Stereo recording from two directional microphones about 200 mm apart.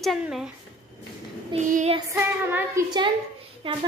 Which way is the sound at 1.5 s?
35° right (ahead or behind).